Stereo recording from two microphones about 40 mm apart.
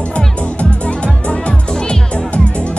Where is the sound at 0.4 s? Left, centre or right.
Left.